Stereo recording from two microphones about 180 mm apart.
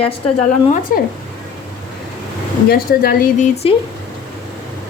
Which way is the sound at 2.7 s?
55° left (ahead or behind).